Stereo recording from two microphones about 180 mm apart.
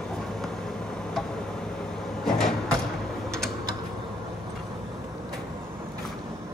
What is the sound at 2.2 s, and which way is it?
Cupboard open or close, centre (ahead or behind).